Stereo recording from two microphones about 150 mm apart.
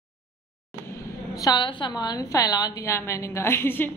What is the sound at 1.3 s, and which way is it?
A woman's voice, 25° left (ahead or behind).